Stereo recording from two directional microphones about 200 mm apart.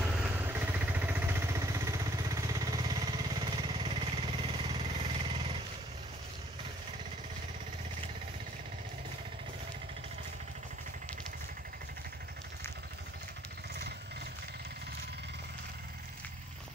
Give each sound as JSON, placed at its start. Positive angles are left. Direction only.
{"t": 0.0, "sound": "vehicle", "side_deg": -5}